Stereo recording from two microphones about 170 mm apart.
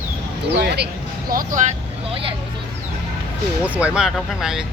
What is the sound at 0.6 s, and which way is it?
Speech, 70° right (ahead or behind).